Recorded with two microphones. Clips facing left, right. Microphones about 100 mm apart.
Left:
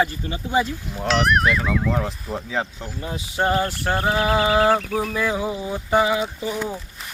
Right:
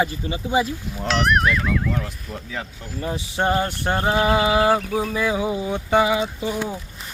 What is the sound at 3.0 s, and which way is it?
Speech, 30° right (ahead or behind).